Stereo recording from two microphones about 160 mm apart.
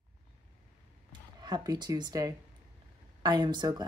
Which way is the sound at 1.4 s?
25° right (ahead or behind).